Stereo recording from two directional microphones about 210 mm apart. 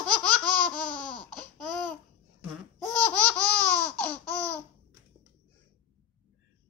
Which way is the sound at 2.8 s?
15° right (ahead or behind).